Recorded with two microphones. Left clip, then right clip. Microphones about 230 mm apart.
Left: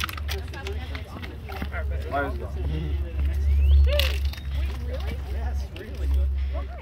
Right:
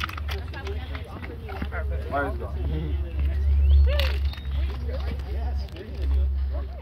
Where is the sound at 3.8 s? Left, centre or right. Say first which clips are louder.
Left 3 dB; left.